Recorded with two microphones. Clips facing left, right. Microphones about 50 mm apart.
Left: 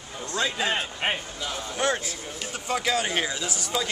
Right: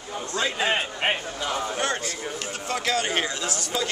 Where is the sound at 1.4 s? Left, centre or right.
Right.